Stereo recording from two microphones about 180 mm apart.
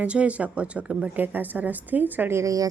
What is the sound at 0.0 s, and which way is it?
Speech, 5° right (ahead or behind).